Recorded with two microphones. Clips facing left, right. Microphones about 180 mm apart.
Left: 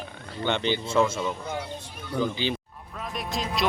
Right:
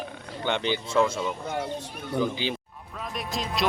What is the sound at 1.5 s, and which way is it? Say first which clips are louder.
Speech: right 3 dB; 45° right (ahead or behind).